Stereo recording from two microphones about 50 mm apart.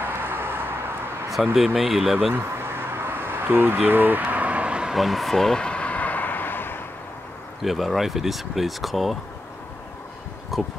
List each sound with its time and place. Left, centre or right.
0.0 s vehicle: right
1.3 s speech: centre
2.3 s a sound: right
3.8 s vehicle: right
4.9 s a sound: centre; by 6.8 s left
7.6 s speech: centre
10.5 s speech: centre